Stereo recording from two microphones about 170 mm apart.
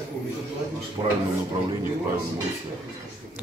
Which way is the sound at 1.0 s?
25° right (ahead or behind).